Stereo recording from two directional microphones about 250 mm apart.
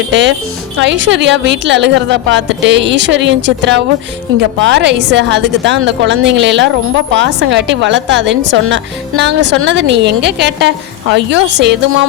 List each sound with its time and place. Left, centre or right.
0.1 s a woman's voice: right